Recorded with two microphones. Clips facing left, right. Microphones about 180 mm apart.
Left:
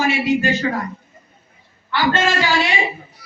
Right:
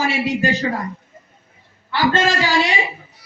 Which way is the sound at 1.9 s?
35° right (ahead or behind).